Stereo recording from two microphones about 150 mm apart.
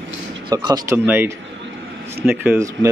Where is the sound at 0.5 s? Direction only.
25° right (ahead or behind).